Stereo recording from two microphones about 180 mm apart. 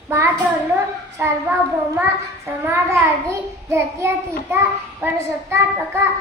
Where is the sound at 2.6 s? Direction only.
10° right (ahead or behind).